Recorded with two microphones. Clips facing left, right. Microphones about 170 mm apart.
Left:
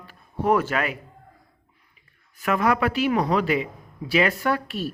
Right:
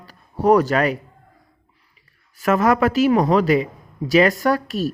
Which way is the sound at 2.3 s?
40° right (ahead or behind).